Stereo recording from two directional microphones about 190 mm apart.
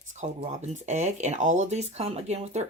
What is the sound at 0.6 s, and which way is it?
Speech, 40° right (ahead or behind).